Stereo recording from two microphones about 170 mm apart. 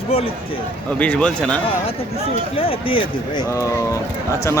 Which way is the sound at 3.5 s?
20° left (ahead or behind).